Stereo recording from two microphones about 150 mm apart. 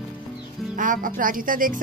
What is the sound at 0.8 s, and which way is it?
Speech, 65° right (ahead or behind).